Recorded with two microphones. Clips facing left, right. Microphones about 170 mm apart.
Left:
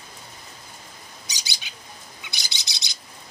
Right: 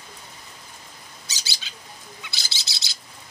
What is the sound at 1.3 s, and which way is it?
Bird, 15° left (ahead or behind).